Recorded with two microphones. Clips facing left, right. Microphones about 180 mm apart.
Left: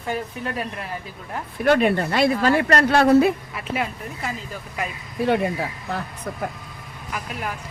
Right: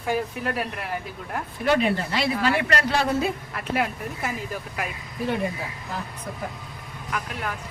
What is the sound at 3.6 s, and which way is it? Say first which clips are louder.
A woman's voice: right 1 dB; 5° right (ahead or behind).